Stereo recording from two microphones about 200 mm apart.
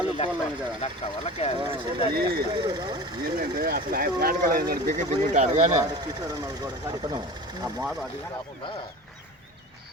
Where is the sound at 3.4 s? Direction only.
55° right (ahead or behind); by 5.7 s 35° right (ahead or behind).